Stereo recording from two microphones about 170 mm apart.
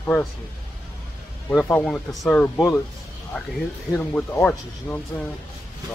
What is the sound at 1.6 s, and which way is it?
Speech, 10° left (ahead or behind).